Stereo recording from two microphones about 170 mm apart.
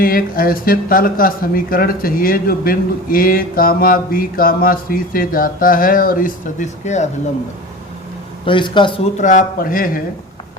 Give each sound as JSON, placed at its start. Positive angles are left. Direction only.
{"t": 0.0, "sound": "speech", "side_deg": 60}
{"t": 8.4, "sound": "speech", "side_deg": 30}
{"t": 9.1, "sound": "speech", "side_deg": 45}